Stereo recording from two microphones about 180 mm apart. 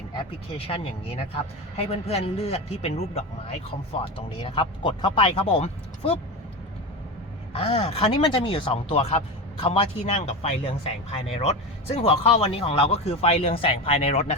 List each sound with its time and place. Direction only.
0.3 s speech: 30° left (ahead or behind)
7.5 s speech: 35° left (ahead or behind)